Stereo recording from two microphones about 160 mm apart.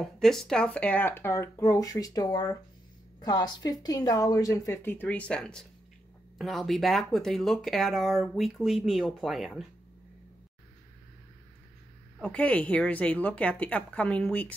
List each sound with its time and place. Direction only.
0.0 s a woman's voice: centre (ahead or behind)
12.2 s speech: 10° left (ahead or behind)